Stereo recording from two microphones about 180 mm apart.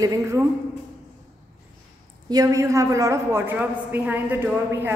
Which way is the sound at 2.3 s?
20° right (ahead or behind).